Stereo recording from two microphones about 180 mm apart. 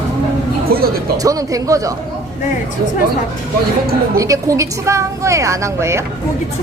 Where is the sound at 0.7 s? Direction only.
55° right (ahead or behind).